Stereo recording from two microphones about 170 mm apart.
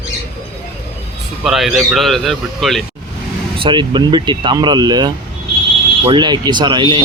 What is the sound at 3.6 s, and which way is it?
Speech, 30° right (ahead or behind).